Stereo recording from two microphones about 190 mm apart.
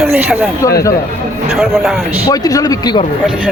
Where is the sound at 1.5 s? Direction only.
Centre (ahead or behind).